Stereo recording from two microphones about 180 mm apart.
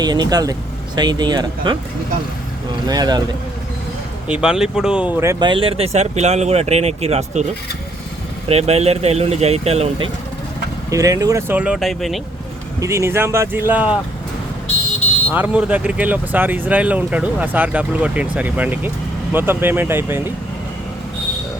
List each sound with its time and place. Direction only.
0.0 s speech: 25° right (ahead or behind)
2.8 s speech: 20° right (ahead or behind)
4.3 s speech: 5° right (ahead or behind); by 7.4 s 35° right (ahead or behind)
8.4 s speech: 35° right (ahead or behind)
10.9 s speech: 20° right (ahead or behind); by 12.2 s centre (ahead or behind)
12.8 s speech: 15° right (ahead or behind)
15.3 s speech: 10° right (ahead or behind)